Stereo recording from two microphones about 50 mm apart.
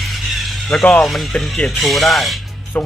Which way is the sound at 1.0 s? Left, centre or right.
Centre.